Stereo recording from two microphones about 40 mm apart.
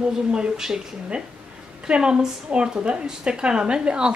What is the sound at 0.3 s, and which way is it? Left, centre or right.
A woman's voice, centre.